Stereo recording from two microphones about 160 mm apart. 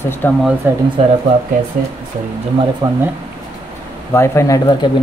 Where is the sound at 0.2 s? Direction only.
10° left (ahead or behind).